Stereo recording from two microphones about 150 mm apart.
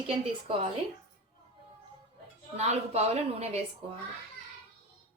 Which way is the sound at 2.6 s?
45° right (ahead or behind).